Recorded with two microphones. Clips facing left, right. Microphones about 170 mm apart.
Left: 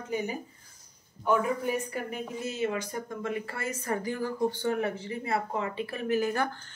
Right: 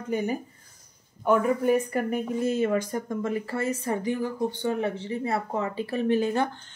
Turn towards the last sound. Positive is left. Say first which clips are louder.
# right 4 dB
turn(degrees=-25)  # may be behind; listen again after turning